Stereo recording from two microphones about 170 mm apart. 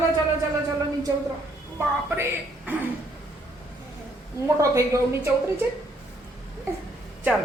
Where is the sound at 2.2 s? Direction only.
10° right (ahead or behind).